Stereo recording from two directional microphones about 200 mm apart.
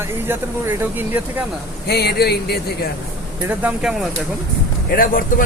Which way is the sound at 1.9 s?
55° left (ahead or behind).